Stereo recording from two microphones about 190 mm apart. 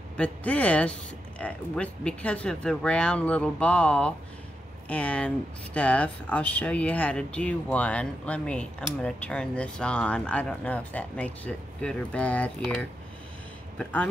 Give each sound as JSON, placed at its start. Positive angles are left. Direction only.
{"t": 0.2, "sound": "speech", "side_deg": 5}